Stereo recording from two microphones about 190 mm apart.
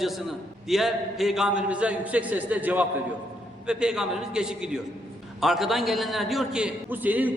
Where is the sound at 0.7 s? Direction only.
Centre (ahead or behind).